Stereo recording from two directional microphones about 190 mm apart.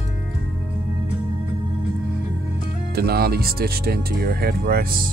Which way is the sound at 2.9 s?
55° right (ahead or behind).